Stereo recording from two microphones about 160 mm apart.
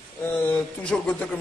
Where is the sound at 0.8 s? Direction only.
5° left (ahead or behind).